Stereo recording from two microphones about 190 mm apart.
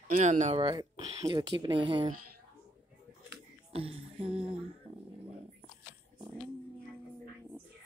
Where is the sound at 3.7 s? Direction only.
30° right (ahead or behind).